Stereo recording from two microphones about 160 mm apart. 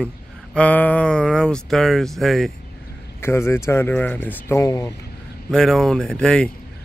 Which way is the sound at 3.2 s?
15° left (ahead or behind).